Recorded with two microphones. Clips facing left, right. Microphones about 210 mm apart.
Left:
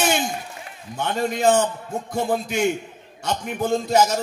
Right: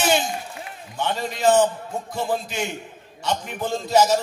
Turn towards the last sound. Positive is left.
turn(degrees=55)  # may be behind; listen again after turning